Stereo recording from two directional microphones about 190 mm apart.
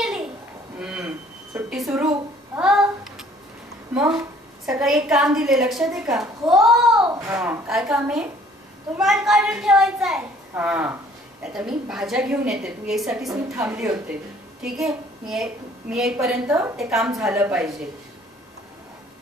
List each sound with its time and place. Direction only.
0.7 s a sound: 5° right (ahead or behind)
3.9 s a woman's voice: 5° right (ahead or behind)
7.1 s a child's voice: 20° right (ahead or behind)
7.3 s a woman's voice: 5° right (ahead or behind)